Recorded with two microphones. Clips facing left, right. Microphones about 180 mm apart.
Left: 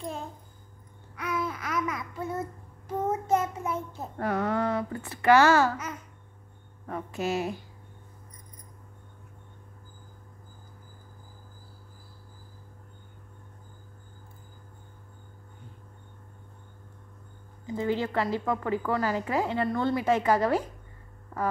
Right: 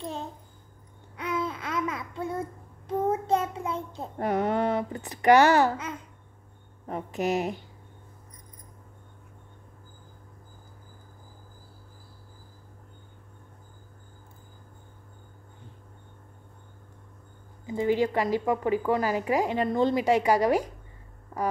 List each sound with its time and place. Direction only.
1.1 s babbling: 25° right (ahead or behind)
3.1 s child singing: 30° right (ahead or behind)
4.2 s speech: 20° right (ahead or behind)
17.6 s a woman's voice: 15° right (ahead or behind)